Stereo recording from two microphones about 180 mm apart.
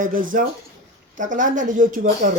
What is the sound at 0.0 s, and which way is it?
A man's voice, 50° right (ahead or behind).